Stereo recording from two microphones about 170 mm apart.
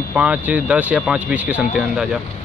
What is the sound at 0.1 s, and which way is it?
Speech, 10° right (ahead or behind).